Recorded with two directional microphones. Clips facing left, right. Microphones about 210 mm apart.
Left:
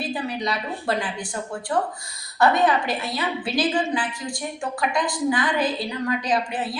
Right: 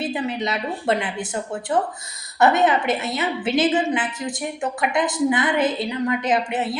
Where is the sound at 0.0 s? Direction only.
20° right (ahead or behind).